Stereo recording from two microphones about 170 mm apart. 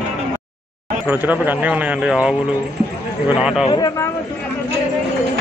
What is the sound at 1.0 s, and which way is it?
A man's voice, 10° right (ahead or behind).